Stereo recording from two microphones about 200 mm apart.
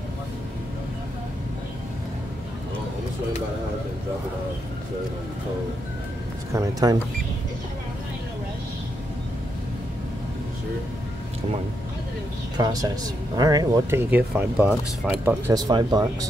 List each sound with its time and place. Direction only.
6.5 s speech: 15° right (ahead or behind)
12.5 s speech: 20° right (ahead or behind)